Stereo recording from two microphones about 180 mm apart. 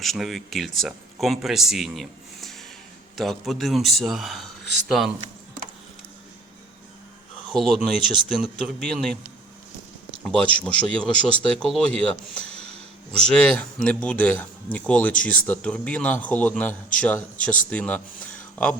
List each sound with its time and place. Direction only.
0.0 s speech: centre (ahead or behind)
7.5 s speech: centre (ahead or behind)
10.2 s speech: 5° left (ahead or behind)
12.5 s music: 35° right (ahead or behind)
13.2 s speech: 5° left (ahead or behind)